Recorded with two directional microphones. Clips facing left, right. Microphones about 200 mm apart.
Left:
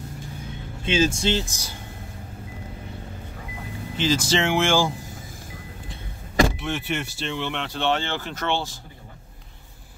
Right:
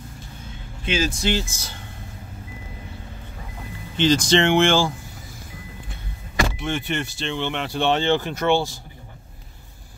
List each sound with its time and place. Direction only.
0.8 s speech: 25° left (ahead or behind)
3.9 s speech: 5° left (ahead or behind)
6.6 s speech: 5° left (ahead or behind)
7.6 s speech: 15° right (ahead or behind)